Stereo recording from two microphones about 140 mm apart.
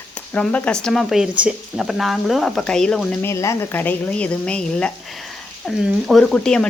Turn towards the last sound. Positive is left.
turn(degrees=5)  # may be behind; listen again after turning